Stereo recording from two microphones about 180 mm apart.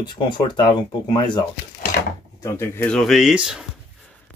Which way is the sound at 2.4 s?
15° left (ahead or behind).